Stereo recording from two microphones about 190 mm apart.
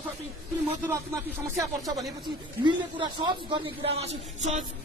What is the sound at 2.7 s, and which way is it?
Speech, 25° right (ahead or behind).